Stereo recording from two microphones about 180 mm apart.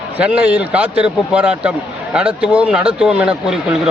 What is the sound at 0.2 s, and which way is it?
A man's voice, 5° right (ahead or behind).